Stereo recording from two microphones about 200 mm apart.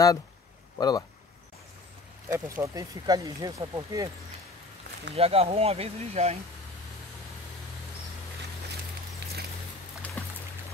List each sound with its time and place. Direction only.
0.7 s speech: 20° left (ahead or behind)
2.2 s speech: 15° right (ahead or behind)
5.1 s speech: 30° right (ahead or behind)
10.2 s music: 10° left (ahead or behind)